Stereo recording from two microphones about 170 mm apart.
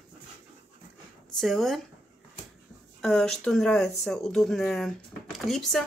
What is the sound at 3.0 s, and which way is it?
Speech, centre (ahead or behind).